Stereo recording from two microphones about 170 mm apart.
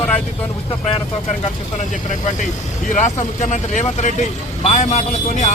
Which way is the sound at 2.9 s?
45° left (ahead or behind).